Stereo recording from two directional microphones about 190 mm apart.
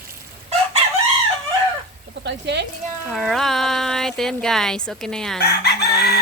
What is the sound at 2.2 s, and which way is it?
Speech, 65° right (ahead or behind).